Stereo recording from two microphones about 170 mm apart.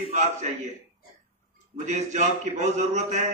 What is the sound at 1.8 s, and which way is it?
A man's voice, 45° right (ahead or behind).